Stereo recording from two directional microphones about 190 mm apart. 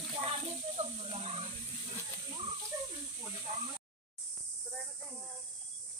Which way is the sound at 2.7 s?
15° right (ahead or behind).